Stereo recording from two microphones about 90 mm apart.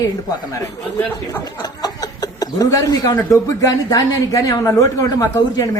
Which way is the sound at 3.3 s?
40° left (ahead or behind).